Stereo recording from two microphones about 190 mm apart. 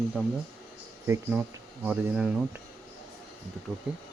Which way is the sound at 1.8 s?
Centre (ahead or behind).